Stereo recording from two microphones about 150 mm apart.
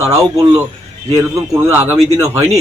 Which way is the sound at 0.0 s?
20° right (ahead or behind).